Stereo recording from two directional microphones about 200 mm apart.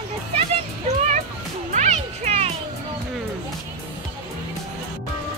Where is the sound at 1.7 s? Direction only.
35° right (ahead or behind).